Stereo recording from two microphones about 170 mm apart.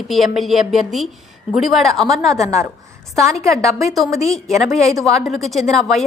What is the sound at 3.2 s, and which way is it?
Speech, 15° right (ahead or behind).